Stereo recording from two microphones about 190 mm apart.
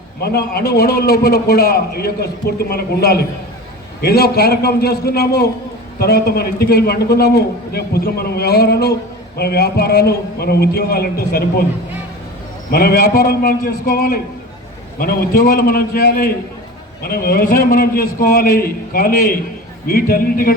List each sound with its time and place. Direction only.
0.2 s a man's voice: 55° left (ahead or behind)
12.7 s a man's voice: 55° left (ahead or behind)